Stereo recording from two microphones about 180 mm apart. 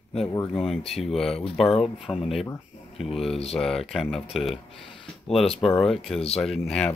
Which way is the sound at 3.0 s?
Centre (ahead or behind).